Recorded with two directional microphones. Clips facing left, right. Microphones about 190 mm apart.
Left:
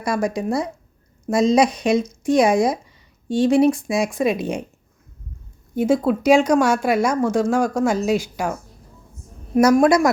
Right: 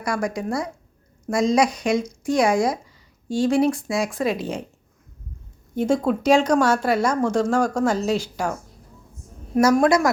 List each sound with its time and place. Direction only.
0.0 s speech: 25° left (ahead or behind)
5.7 s speech: 5° left (ahead or behind)
9.6 s speech: 20° left (ahead or behind)